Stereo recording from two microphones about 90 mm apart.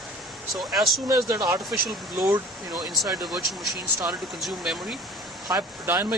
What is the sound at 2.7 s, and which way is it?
Speech, centre (ahead or behind).